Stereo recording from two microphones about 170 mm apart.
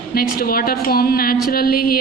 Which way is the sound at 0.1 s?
60° left (ahead or behind).